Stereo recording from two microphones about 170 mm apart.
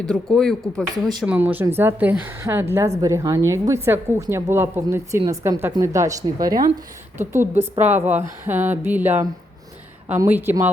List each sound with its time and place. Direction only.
0.0 s a woman's voice: 5° left (ahead or behind); by 10.7 s 15° right (ahead or behind)